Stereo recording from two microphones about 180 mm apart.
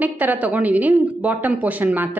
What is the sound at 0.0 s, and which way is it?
Speech, 10° right (ahead or behind).